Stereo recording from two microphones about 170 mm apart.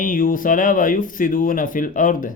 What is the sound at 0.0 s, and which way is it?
Speech, 55° left (ahead or behind).